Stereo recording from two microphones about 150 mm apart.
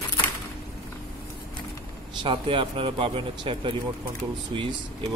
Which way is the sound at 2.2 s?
35° right (ahead or behind).